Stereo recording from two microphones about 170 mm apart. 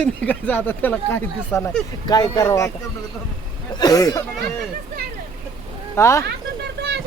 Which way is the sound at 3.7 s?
25° left (ahead or behind).